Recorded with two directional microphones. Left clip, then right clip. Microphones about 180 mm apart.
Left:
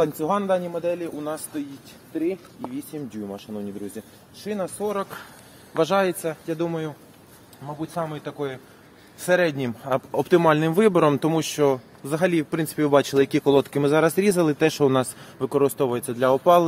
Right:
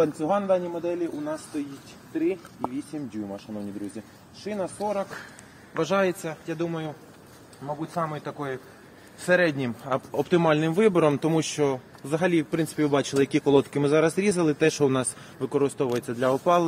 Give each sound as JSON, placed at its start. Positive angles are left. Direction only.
{"t": 0.0, "sound": "a man's voice", "side_deg": 50}
{"t": 2.9, "sound": "speech", "side_deg": 45}
{"t": 4.7, "sound": "a man's voice", "side_deg": 50}
{"t": 7.8, "sound": "a man's voice", "side_deg": 60}
{"t": 9.2, "sound": "a man's voice", "side_deg": 70}